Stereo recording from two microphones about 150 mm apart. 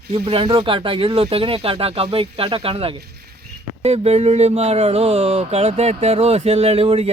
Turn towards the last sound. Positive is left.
turn(degrees=-40)  # may be behind; listen again after turning